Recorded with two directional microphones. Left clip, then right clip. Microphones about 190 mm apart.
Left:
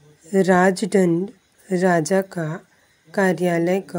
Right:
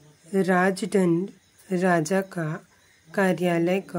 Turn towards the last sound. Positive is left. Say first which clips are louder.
# left 4 dB
turn(degrees=15)  # may be behind; listen again after turning